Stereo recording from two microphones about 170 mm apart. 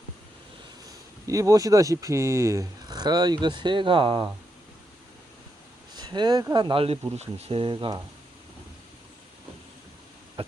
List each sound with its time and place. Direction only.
1.3 s speech: 20° right (ahead or behind)
5.9 s speech: 25° right (ahead or behind)